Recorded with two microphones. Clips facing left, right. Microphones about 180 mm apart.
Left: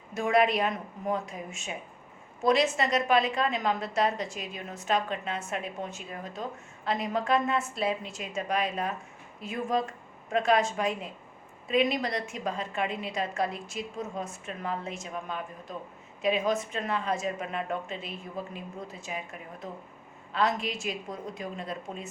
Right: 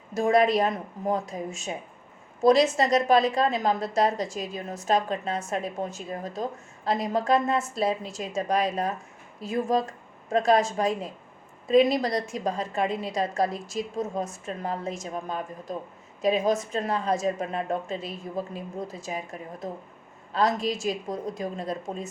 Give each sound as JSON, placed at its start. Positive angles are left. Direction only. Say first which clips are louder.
{"t": 0.1, "sound": "a woman's voice", "louder": "right 4 dB", "side_deg": -40}